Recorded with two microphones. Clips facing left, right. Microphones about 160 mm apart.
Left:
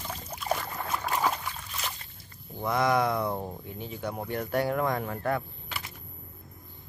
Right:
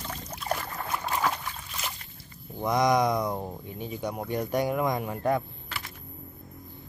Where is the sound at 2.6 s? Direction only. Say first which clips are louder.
Right 2 dB; 15° right (ahead or behind).